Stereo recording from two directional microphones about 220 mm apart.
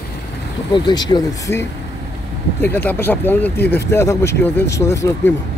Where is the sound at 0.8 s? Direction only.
20° left (ahead or behind).